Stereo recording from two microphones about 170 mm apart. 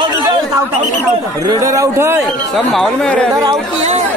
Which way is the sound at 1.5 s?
20° right (ahead or behind).